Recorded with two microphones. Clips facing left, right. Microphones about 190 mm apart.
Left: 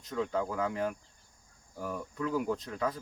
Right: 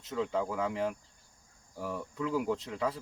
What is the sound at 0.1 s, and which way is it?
Speech, centre (ahead or behind).